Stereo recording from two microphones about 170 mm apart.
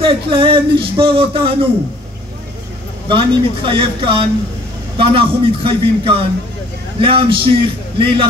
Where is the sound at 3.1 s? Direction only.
30° right (ahead or behind).